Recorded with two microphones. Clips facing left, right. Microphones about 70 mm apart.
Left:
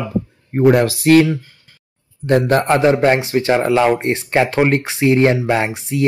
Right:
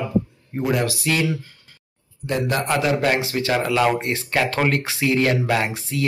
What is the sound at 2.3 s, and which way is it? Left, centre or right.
A man's voice, left.